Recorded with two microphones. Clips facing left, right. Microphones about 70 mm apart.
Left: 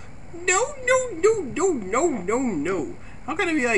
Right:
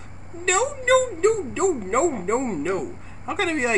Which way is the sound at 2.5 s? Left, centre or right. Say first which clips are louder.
Even; centre.